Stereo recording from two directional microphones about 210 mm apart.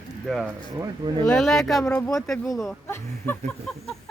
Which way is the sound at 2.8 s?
10° left (ahead or behind).